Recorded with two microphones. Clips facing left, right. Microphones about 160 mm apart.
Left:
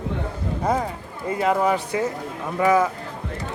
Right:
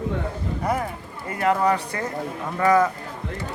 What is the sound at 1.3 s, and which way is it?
A man's voice, 20° left (ahead or behind).